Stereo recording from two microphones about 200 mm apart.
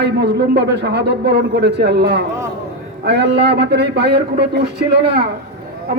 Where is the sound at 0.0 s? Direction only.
55° right (ahead or behind).